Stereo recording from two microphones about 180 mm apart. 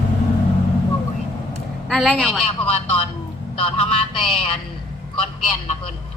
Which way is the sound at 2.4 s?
30° left (ahead or behind).